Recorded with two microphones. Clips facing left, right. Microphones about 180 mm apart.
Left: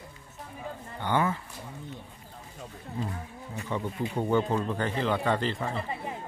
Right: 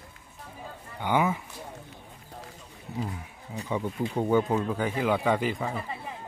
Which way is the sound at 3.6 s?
10° right (ahead or behind).